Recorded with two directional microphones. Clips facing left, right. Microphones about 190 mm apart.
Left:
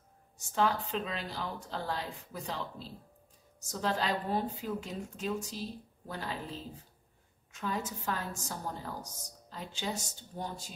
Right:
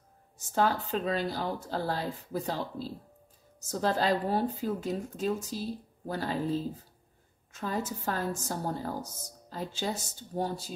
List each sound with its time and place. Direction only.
0.4 s speech: 40° right (ahead or behind)